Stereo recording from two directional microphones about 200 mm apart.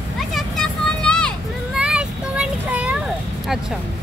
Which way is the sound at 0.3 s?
Centre (ahead or behind).